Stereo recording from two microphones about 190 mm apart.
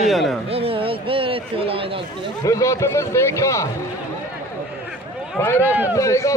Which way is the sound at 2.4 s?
15° left (ahead or behind).